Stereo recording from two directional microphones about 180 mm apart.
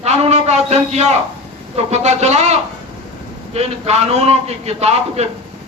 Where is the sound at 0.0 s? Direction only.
35° right (ahead or behind).